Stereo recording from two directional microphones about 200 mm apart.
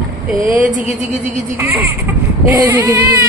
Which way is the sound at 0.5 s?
40° right (ahead or behind).